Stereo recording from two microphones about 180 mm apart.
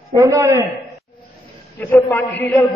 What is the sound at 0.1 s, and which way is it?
Speech, 15° right (ahead or behind).